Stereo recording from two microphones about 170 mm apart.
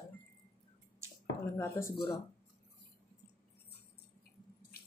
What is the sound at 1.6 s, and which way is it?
Speech, 15° left (ahead or behind).